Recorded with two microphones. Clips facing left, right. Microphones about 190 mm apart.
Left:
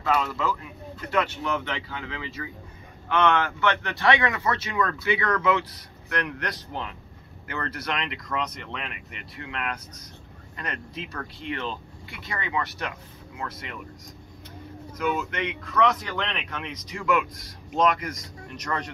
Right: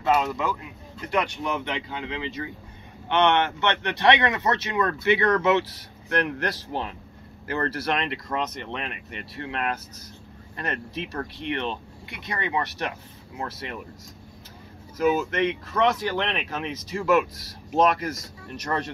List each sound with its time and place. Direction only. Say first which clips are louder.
0.0 s speech: right 2 dB; 20° right (ahead or behind)
15.3 s speech: right 3 dB; 30° right (ahead or behind)